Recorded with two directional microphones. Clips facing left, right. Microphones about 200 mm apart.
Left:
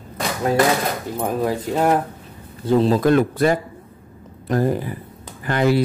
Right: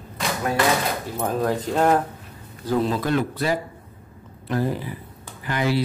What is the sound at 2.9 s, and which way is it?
A man's voice, 45° left (ahead or behind).